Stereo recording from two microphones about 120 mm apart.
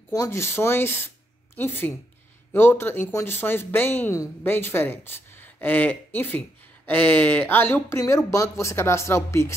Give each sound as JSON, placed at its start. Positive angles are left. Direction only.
{"t": 0.1, "sound": "speech", "side_deg": 25}